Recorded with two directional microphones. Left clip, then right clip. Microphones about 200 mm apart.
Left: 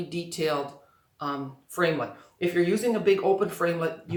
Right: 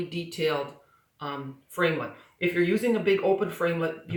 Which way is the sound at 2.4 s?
15° left (ahead or behind).